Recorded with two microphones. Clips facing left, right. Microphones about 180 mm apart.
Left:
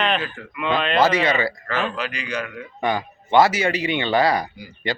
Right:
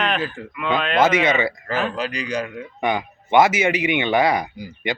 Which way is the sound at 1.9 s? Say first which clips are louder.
Right 3 dB; 40° right (ahead or behind).